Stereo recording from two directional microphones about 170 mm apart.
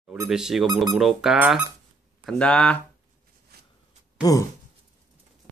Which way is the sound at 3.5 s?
70° right (ahead or behind).